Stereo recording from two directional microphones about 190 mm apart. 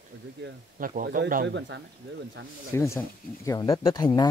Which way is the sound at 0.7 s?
45° right (ahead or behind).